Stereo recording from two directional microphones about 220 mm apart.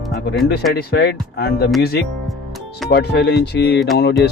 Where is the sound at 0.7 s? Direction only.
50° left (ahead or behind).